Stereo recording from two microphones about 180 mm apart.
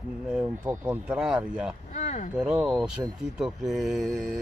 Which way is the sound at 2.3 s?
5° right (ahead or behind).